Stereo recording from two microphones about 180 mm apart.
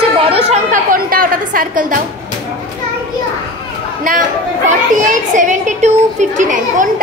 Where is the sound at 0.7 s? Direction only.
50° right (ahead or behind).